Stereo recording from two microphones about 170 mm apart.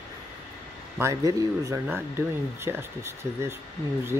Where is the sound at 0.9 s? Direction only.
15° right (ahead or behind).